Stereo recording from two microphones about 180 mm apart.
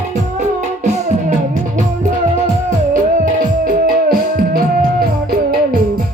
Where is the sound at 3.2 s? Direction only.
50° right (ahead or behind).